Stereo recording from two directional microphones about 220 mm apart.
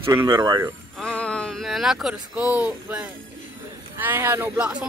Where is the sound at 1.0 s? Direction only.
5° left (ahead or behind).